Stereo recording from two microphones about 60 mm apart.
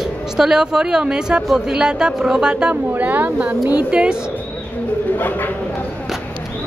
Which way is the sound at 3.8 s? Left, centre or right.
Centre.